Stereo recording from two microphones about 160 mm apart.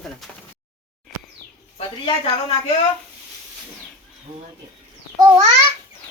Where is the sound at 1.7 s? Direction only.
30° left (ahead or behind).